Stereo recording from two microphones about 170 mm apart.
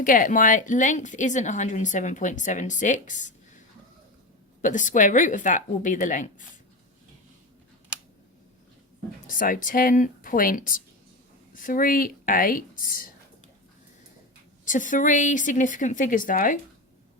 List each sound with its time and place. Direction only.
0.0 s a woman's voice: 50° left (ahead or behind)
4.6 s a woman's voice: 50° left (ahead or behind)
9.2 s a woman's voice: 55° left (ahead or behind)
14.6 s a woman's voice: 50° left (ahead or behind)